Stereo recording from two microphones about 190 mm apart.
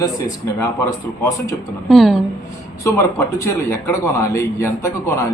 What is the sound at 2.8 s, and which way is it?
A man's voice, 15° left (ahead or behind).